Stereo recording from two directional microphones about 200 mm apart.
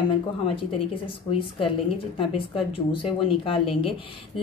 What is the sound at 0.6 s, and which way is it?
A woman's voice, 25° left (ahead or behind).